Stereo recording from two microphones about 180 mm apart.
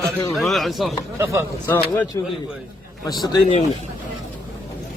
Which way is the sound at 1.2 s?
15° right (ahead or behind).